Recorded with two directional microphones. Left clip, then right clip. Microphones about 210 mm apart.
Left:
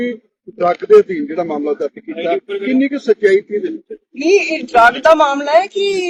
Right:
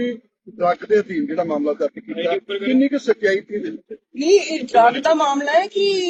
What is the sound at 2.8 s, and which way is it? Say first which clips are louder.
Speech: left 4 dB; 55° left (ahead or behind).